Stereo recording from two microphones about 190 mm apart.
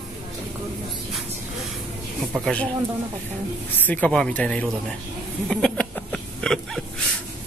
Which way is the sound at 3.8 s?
10° left (ahead or behind).